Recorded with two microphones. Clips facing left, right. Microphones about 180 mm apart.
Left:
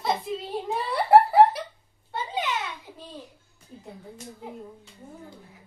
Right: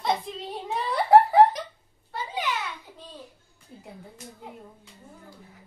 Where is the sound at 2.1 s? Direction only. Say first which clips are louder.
Left 2 dB; 25° left (ahead or behind).